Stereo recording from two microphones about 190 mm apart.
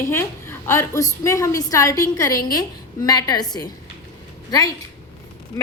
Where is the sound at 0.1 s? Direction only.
15° left (ahead or behind).